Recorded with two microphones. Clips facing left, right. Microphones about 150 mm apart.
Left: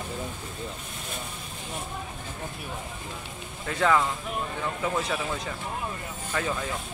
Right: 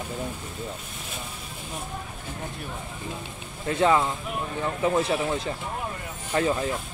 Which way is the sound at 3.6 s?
25° right (ahead or behind).